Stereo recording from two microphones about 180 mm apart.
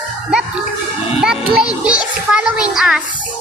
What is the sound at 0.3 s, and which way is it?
Speech, 5° right (ahead or behind).